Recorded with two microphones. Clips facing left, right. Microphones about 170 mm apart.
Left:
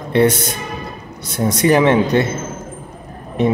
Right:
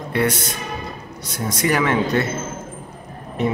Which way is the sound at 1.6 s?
25° left (ahead or behind).